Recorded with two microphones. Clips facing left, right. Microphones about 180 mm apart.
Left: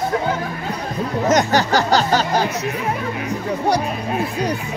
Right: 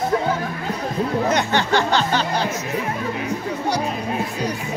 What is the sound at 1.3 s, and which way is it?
Music, 40° left (ahead or behind).